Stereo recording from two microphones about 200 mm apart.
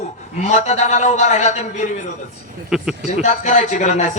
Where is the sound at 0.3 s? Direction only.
35° left (ahead or behind).